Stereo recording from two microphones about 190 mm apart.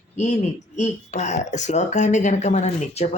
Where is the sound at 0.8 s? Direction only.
40° left (ahead or behind).